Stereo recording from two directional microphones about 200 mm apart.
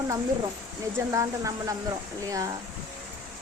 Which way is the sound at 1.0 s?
15° right (ahead or behind).